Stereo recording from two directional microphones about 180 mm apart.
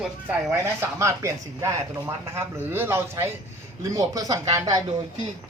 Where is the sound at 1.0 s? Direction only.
15° right (ahead or behind).